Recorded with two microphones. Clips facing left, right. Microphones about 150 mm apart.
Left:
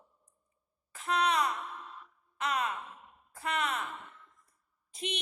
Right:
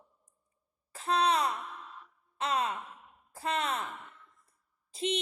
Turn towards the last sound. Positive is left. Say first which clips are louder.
# right 6 dB
turn(degrees=-30)  # may be behind; listen again after turning